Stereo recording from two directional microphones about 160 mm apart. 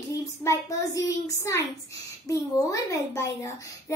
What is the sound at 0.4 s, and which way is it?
A woman's voice, 20° left (ahead or behind).